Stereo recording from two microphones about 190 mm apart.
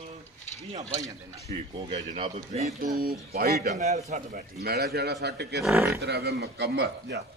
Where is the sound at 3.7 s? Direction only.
35° right (ahead or behind); by 5.6 s 60° right (ahead or behind).